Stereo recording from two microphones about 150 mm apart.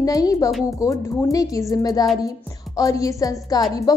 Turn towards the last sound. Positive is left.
turn(degrees=25)  # may be behind; listen again after turning